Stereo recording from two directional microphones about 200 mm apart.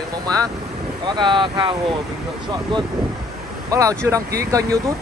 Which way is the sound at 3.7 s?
15° right (ahead or behind).